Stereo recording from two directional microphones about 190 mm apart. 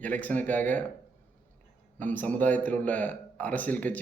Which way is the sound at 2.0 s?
10° left (ahead or behind).